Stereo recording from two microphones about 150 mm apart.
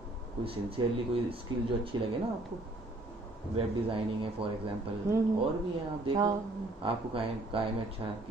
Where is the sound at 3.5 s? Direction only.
35° right (ahead or behind).